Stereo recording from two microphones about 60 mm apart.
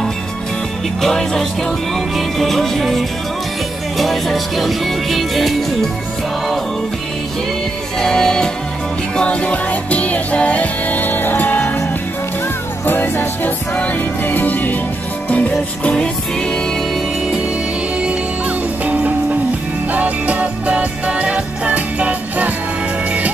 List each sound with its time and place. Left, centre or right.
1.0 s music: centre
8.0 s music: centre; by 11.8 s left
12.8 s music: left; by 16.1 s centre
19.9 s music: right